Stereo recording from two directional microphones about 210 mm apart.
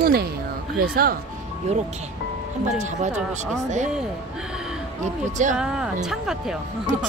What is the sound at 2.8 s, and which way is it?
Speech, 35° right (ahead or behind).